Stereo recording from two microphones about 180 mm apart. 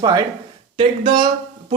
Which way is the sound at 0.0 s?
20° right (ahead or behind).